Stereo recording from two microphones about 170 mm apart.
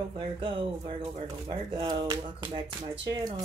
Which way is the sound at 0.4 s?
30° right (ahead or behind).